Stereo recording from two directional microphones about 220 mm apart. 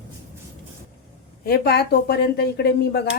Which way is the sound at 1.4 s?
45° left (ahead or behind).